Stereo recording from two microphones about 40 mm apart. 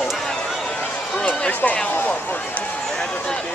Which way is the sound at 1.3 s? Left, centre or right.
Left.